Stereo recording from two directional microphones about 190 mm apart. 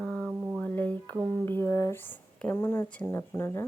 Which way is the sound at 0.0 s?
5° left (ahead or behind).